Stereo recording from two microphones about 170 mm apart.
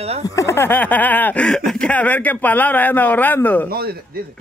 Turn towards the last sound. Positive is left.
turn(degrees=-65)  # may be behind; listen again after turning